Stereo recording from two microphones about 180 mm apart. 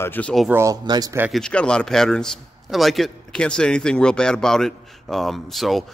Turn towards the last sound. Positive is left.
turn(degrees=0)  # may be behind; listen again after turning